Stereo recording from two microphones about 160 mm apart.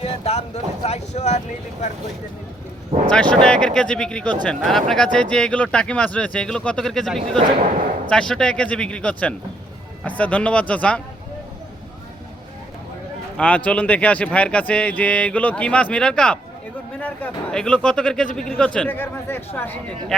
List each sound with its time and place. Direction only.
0.0 s speech: 40° left (ahead or behind)
3.1 s speech: 5° left (ahead or behind)
13.3 s a man's voice: 5° left (ahead or behind)